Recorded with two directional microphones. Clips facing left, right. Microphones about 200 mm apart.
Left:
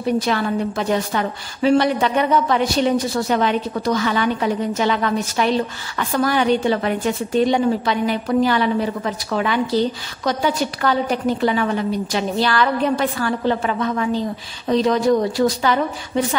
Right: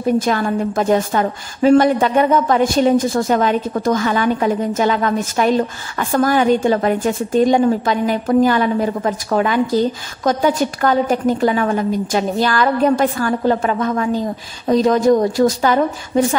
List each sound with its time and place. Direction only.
0.0 s a woman's voice: 45° right (ahead or behind)